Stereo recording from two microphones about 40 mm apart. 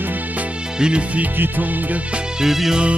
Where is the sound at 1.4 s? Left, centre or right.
Right.